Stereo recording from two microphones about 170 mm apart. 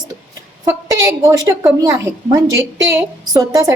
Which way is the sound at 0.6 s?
15° right (ahead or behind).